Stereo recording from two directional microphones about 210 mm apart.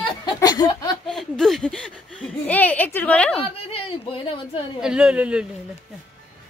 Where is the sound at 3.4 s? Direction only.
25° left (ahead or behind).